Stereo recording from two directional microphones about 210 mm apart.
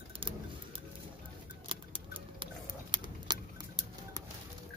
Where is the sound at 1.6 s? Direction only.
25° right (ahead or behind).